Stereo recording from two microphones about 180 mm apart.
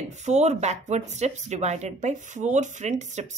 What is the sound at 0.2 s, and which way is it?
Speech, 40° right (ahead or behind).